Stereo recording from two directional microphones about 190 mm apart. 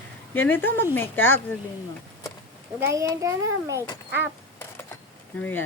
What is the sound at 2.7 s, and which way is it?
A child's voice, 15° right (ahead or behind).